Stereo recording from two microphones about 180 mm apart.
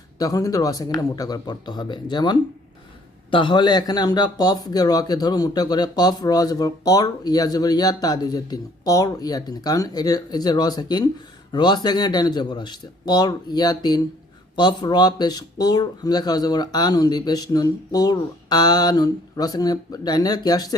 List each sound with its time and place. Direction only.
0.2 s speech: 20° left (ahead or behind)